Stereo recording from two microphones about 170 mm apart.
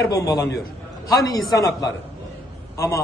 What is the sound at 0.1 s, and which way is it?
Speech, 20° left (ahead or behind).